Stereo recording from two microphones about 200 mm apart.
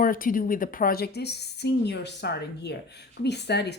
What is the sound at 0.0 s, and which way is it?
A woman's voice, 45° left (ahead or behind).